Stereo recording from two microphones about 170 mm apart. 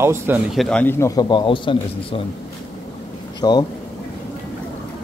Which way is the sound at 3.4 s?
20° left (ahead or behind).